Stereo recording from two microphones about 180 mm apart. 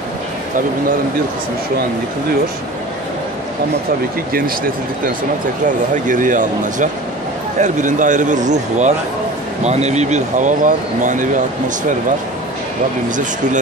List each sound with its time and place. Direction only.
6.0 s speech: 45° right (ahead or behind)
13.1 s speech: 45° right (ahead or behind)